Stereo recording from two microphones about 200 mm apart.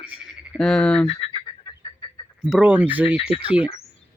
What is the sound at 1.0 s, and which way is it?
Fowl, 25° left (ahead or behind).